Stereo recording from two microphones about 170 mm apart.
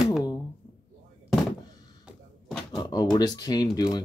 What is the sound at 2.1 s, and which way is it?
Door, centre (ahead or behind).